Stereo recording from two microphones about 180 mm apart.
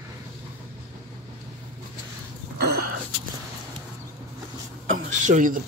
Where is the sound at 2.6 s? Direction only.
60° right (ahead or behind).